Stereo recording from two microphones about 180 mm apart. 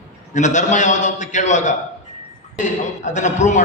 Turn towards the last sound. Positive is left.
turn(degrees=40)  # may be behind; listen again after turning